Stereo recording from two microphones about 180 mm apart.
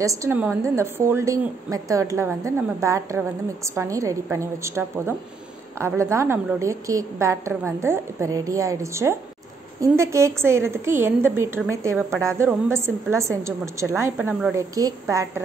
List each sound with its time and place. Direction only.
0.0 s a woman's voice: 15° right (ahead or behind)